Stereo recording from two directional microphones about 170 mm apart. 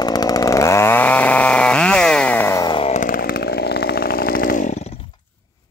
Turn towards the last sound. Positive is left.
turn(degrees=55)  # may be behind; listen again after turning